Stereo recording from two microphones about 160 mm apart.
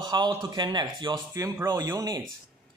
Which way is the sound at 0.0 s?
25° right (ahead or behind).